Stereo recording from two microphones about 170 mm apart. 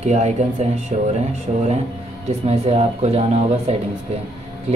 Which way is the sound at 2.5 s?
35° right (ahead or behind).